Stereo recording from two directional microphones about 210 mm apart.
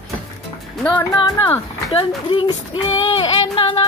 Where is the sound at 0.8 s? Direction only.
10° left (ahead or behind); by 3.9 s 25° left (ahead or behind).